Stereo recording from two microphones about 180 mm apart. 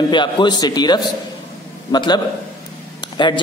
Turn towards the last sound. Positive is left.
turn(degrees=25)  # may be behind; listen again after turning